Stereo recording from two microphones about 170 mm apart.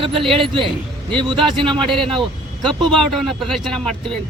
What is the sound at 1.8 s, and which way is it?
Speech, centre (ahead or behind).